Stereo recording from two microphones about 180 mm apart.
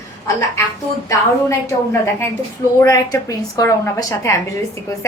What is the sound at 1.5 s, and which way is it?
A woman's voice, 15° left (ahead or behind).